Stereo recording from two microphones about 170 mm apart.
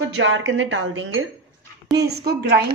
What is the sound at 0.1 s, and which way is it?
Speech, 90° right.